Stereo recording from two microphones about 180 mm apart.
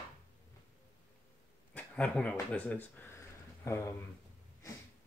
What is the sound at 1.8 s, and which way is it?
Speech, 5° left (ahead or behind).